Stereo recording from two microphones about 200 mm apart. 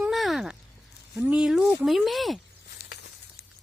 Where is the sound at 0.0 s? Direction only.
Centre (ahead or behind).